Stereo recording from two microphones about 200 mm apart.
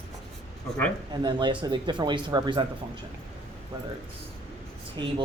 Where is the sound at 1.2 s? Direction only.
25° right (ahead or behind).